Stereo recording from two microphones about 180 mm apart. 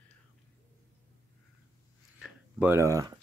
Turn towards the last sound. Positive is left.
turn(degrees=-20)  # may be behind; listen again after turning